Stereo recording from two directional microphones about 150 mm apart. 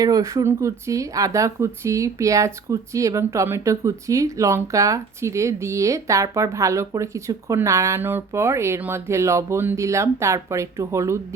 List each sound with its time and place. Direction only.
0.0 s speech: 20° right (ahead or behind)